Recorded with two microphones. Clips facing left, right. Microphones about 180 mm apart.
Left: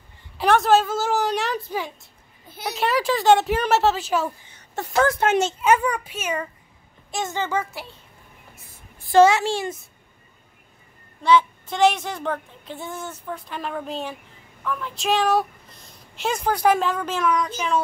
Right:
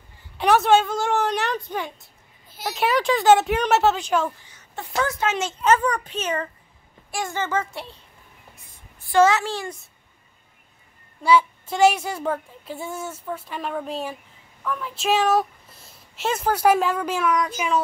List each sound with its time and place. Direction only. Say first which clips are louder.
0.4 s speech: even; centre (ahead or behind)
4.9 s speech: left 5 dB; 55° left (ahead or behind)
5.6 s a child's voice: even; 10° left (ahead or behind)
7.1 s a woman's voice: left 1 dB; 20° left (ahead or behind)
7.7 s speech: right 1 dB; centre (ahead or behind)
9.4 s a woman's voice: left 4 dB; 25° left (ahead or behind)
11.2 s speech: even; 10° right (ahead or behind)